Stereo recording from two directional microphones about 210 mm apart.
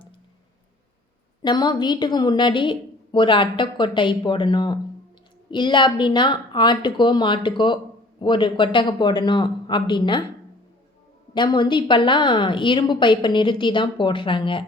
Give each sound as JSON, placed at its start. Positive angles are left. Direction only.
{"t": 1.4, "sound": "a woman's voice", "side_deg": 20}
{"t": 11.3, "sound": "a woman's voice", "side_deg": 20}